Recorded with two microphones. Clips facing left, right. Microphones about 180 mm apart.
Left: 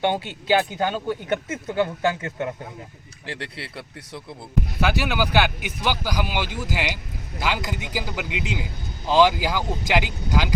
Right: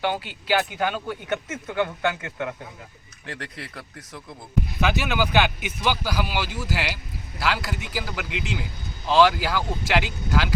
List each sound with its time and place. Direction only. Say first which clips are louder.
0.0 s speech: left 3 dB; 25° left (ahead or behind)
1.6 s speech: left 2 dB; 35° left (ahead or behind)
3.8 s speech: left 3 dB; 10° left (ahead or behind)